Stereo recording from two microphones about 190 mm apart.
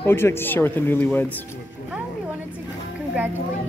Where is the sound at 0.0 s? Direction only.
10° left (ahead or behind).